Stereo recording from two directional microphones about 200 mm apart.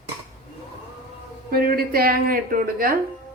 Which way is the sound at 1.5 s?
50° right (ahead or behind).